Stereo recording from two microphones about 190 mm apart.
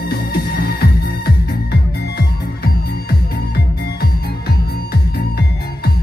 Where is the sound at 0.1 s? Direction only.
55° left (ahead or behind).